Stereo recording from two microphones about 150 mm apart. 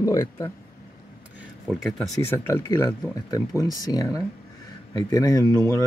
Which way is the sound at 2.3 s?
15° left (ahead or behind).